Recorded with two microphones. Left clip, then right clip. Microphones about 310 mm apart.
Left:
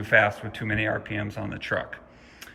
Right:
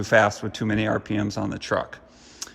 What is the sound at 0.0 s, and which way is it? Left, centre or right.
A man's voice, centre.